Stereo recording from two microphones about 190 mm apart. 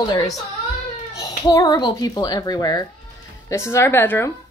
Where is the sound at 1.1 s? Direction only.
20° left (ahead or behind).